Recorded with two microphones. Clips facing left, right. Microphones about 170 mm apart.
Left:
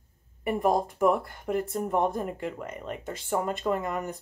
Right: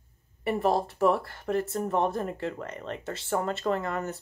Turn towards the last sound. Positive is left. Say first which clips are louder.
# even
turn(degrees=15)  # may be behind; listen again after turning